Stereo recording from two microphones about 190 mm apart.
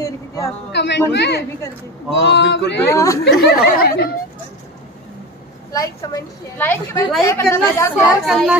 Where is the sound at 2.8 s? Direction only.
15° left (ahead or behind).